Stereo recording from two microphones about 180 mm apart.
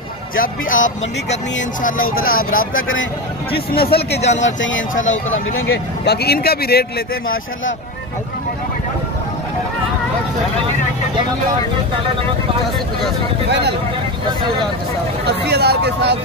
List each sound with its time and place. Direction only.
0.4 s speech: 50° left (ahead or behind)
2.7 s speech: 90° left
3.5 s speech: 60° left (ahead or behind)
4.2 s speech: 40° left (ahead or behind)
4.5 s speech: 90° left
6.0 s speech: 60° left (ahead or behind)
15.2 s speech: 65° right (ahead or behind)